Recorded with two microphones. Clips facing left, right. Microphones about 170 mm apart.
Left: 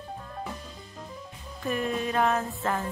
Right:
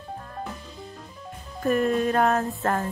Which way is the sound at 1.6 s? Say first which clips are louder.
Right 7 dB; 45° right (ahead or behind).